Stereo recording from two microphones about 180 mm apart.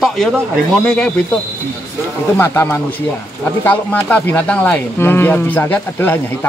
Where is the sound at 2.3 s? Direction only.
10° left (ahead or behind).